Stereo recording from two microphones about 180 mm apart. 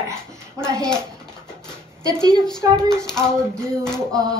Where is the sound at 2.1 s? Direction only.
5° left (ahead or behind).